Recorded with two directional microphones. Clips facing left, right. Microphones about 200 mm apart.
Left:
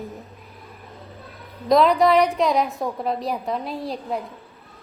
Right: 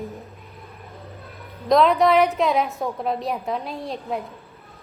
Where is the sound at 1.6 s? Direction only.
Centre (ahead or behind).